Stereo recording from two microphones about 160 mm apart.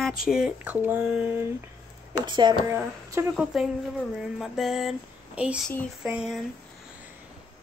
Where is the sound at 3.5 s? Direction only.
Centre (ahead or behind).